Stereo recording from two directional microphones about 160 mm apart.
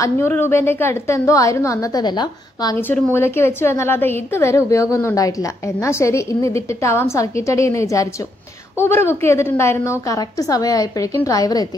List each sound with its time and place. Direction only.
0.0 s a woman's voice: 15° left (ahead or behind)
2.9 s a woman's voice: 15° left (ahead or behind)